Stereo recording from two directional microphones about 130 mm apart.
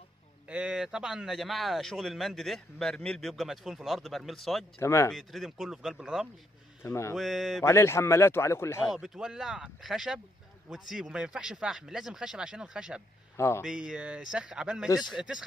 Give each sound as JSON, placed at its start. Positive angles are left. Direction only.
{"t": 0.5, "sound": "speech", "side_deg": -10}
{"t": 4.7, "sound": "speech", "side_deg": 25}
{"t": 5.1, "sound": "speech", "side_deg": 0}
{"t": 6.8, "sound": "speech", "side_deg": 20}
{"t": 7.2, "sound": "speech", "side_deg": 0}
{"t": 7.6, "sound": "speech", "side_deg": 20}
{"t": 8.9, "sound": "speech", "side_deg": -5}
{"t": 13.4, "sound": "speech", "side_deg": 20}
{"t": 13.7, "sound": "a man's voice", "side_deg": -5}